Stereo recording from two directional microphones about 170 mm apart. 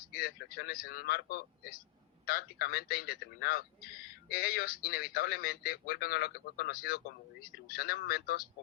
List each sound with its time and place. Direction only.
0.1 s a man's voice: 65° left (ahead or behind)